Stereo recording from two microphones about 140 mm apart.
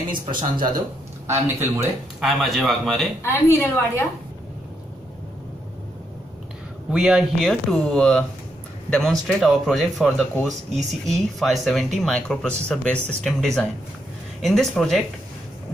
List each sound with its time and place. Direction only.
1.2 s a man's voice: 20° right (ahead or behind)
2.1 s speech: centre (ahead or behind)
3.2 s a woman's voice: 15° left (ahead or behind)
6.9 s speech: 5° right (ahead or behind)